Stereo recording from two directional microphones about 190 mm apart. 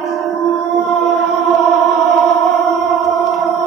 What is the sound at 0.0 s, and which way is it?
Music, centre (ahead or behind).